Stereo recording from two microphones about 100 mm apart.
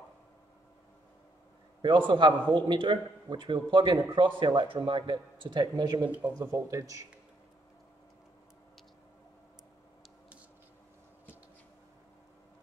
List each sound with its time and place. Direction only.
1.8 s a man's voice: 55° right (ahead or behind)
6.0 s speech: 15° right (ahead or behind)
6.4 s speech: 30° right (ahead or behind)